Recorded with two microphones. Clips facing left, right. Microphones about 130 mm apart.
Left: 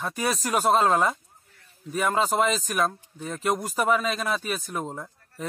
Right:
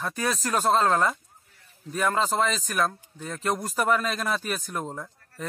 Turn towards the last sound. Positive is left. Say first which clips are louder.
# even
turn(degrees=0)  # may be behind; listen again after turning